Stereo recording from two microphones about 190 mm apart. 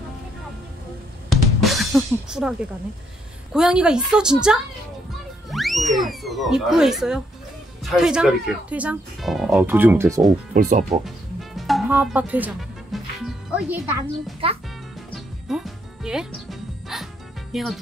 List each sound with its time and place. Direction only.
1.3 s drum: centre (ahead or behind)
3.5 s speech: 5° right (ahead or behind)
5.1 s music: centre (ahead or behind)
7.8 s speech: 5° right (ahead or behind)
10.5 s speech: 40° right (ahead or behind)
11.1 s music: centre (ahead or behind)
14.4 s speech: 30° right (ahead or behind)
15.1 s music: centre (ahead or behind)